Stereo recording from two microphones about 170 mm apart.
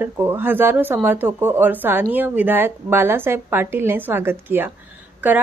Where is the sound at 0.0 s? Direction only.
10° right (ahead or behind).